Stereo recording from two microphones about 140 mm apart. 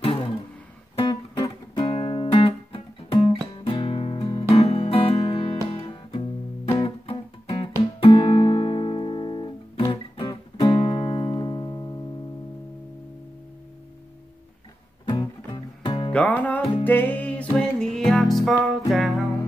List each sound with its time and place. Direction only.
0.9 s music: 35° left (ahead or behind)
15.0 s music: 30° left (ahead or behind)
16.1 s music: 10° left (ahead or behind)